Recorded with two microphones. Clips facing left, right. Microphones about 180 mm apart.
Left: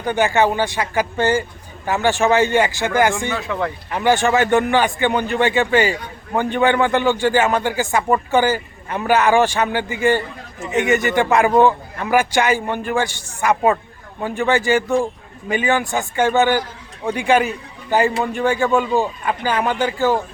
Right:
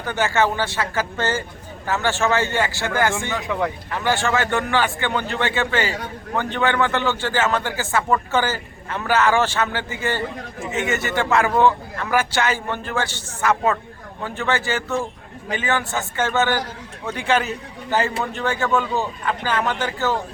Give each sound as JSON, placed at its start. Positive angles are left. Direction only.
{"t": 0.0, "sound": "a man's voice", "side_deg": 15}
{"t": 3.3, "sound": "speech", "side_deg": -15}
{"t": 3.8, "sound": "a man's voice", "side_deg": 15}